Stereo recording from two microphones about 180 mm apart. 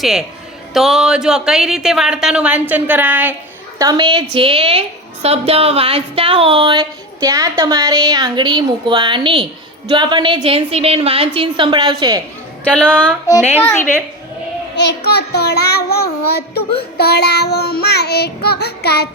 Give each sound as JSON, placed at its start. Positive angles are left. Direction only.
{"t": 0.0, "sound": "speech", "side_deg": 0}
{"t": 3.8, "sound": "a woman's voice", "side_deg": -20}
{"t": 13.6, "sound": "a woman's voice", "side_deg": 10}
{"t": 14.8, "sound": "child singing", "side_deg": 65}